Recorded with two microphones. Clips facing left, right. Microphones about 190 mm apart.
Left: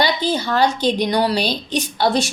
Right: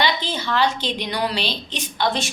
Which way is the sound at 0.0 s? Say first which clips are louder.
Left 4 dB; 40° left (ahead or behind).